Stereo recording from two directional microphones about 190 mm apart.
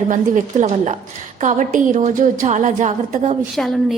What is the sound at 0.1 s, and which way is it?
A woman's voice, 40° right (ahead or behind).